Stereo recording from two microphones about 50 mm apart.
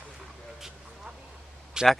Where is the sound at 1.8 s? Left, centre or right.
Centre.